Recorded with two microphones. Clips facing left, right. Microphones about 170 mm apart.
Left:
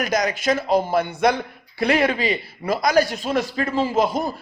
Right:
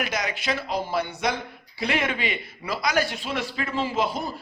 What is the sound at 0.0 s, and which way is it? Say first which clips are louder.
Speech: left 7 dB; 40° left (ahead or behind).